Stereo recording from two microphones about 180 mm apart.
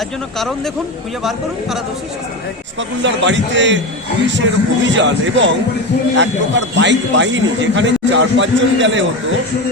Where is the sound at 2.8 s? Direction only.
90° right.